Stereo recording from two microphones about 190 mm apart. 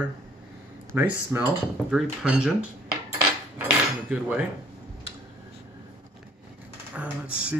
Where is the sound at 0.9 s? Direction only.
10° right (ahead or behind).